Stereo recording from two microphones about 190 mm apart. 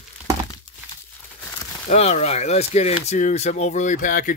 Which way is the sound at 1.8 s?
35° left (ahead or behind).